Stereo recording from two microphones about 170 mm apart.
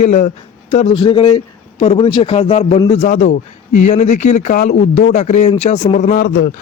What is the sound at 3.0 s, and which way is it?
Speech, 45° left (ahead or behind).